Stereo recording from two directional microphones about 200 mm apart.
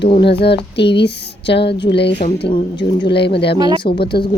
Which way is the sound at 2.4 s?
25° left (ahead or behind).